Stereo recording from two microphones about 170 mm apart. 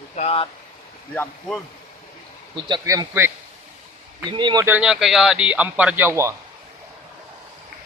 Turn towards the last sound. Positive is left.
turn(degrees=-15)  # may be behind; listen again after turning